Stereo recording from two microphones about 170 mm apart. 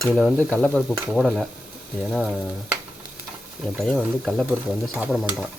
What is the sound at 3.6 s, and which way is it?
Speech, 5° left (ahead or behind).